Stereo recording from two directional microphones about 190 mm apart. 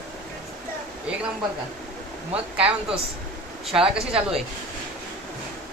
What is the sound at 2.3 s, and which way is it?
A woman's voice, 5° right (ahead or behind).